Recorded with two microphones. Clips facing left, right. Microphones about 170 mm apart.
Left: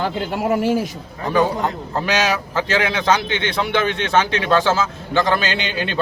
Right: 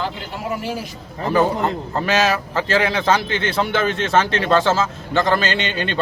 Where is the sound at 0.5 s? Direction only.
50° left (ahead or behind).